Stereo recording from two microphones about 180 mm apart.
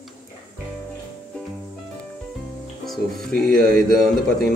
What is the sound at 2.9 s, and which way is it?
A man's voice, 5° left (ahead or behind).